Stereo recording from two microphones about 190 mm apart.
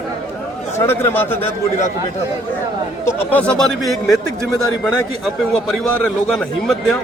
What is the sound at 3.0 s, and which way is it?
A man's voice, 10° left (ahead or behind).